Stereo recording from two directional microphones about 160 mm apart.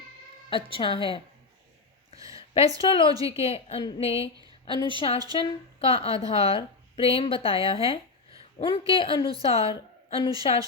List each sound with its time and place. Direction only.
0.5 s a woman's voice: 35° left (ahead or behind)
2.1 s a sound: 20° right (ahead or behind)
2.8 s a woman's voice: 35° left (ahead or behind)
3.8 s speech: 25° left (ahead or behind)
4.1 s speech: 20° right (ahead or behind)
4.6 s a woman's voice: 30° left (ahead or behind)